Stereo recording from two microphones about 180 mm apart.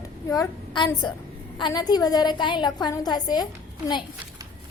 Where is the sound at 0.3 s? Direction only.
20° left (ahead or behind).